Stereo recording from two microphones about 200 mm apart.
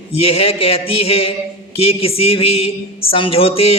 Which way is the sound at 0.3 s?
30° left (ahead or behind).